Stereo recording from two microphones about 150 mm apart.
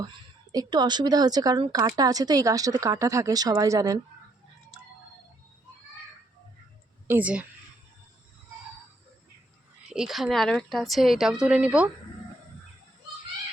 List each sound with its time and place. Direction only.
0.0 s a woman's voice: 25° right (ahead or behind)
7.1 s speech: 10° right (ahead or behind)
9.9 s speech: centre (ahead or behind)